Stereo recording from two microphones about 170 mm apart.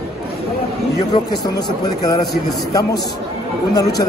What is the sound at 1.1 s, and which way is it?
A man's voice, 25° left (ahead or behind).